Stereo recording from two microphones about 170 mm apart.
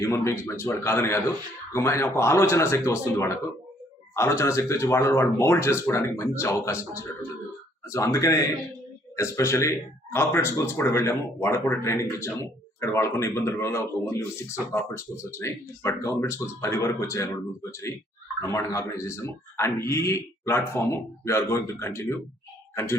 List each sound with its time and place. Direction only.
0.0 s speech: 15° left (ahead or behind)